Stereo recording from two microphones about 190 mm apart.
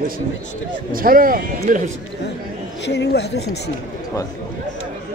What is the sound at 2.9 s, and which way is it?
Speech, 60° left (ahead or behind).